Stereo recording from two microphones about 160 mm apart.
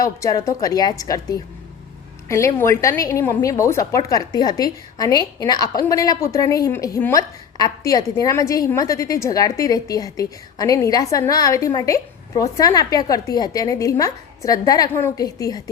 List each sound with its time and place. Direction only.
0.0 s a woman's voice: 20° left (ahead or behind)